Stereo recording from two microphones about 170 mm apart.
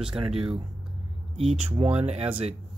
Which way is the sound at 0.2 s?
30° right (ahead or behind).